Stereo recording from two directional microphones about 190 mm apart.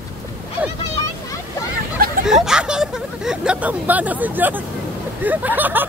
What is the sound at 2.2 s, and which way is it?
Speech, 5° right (ahead or behind).